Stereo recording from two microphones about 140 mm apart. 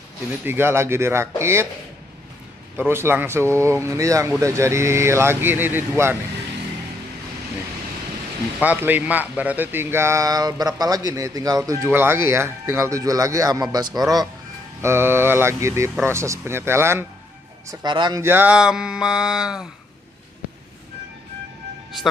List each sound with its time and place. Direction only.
0.5 s speech: 15° right (ahead or behind)
2.8 s speech: 15° right (ahead or behind)
8.5 s speech: 10° right (ahead or behind); by 14.2 s 30° right (ahead or behind)
14.8 s speech: 20° right (ahead or behind)
17.6 s speech: 30° right (ahead or behind)
18.2 s speech: 15° right (ahead or behind)